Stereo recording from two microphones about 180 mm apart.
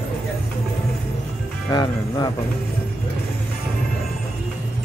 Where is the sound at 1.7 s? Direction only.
25° left (ahead or behind).